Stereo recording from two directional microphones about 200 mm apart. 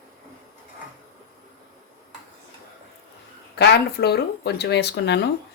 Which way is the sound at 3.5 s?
55° left (ahead or behind).